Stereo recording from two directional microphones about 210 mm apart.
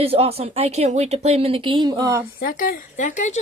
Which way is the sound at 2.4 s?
45° left (ahead or behind).